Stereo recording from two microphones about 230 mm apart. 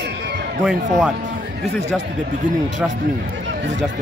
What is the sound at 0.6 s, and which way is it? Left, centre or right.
Speech, centre.